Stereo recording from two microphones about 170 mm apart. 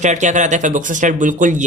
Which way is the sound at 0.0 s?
45° right (ahead or behind).